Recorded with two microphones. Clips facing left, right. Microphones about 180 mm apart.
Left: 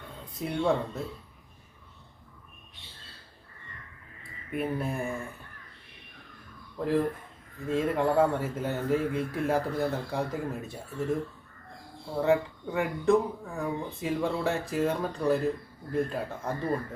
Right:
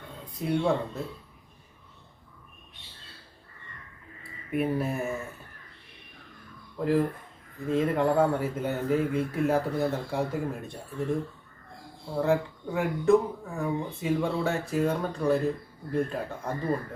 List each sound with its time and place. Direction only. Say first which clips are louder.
0.3 s speech: right 1 dB; centre (ahead or behind)
4.2 s speech: right 4 dB; 5° right (ahead or behind)
6.7 s speech: right 2 dB; centre (ahead or behind)